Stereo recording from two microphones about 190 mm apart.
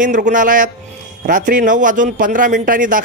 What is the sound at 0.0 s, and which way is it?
A man's voice, 40° right (ahead or behind).